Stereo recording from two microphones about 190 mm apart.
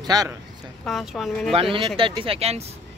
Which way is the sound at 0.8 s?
Centre (ahead or behind).